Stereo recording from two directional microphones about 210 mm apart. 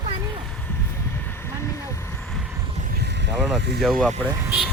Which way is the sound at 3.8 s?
Centre (ahead or behind).